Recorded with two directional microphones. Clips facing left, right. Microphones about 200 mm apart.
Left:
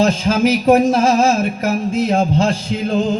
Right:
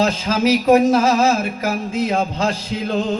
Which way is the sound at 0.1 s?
30° left (ahead or behind).